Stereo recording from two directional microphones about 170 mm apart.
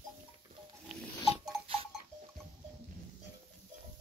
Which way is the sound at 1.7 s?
35° right (ahead or behind).